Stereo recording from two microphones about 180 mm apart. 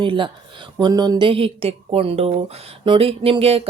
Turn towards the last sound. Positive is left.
turn(degrees=-30)  # may be behind; listen again after turning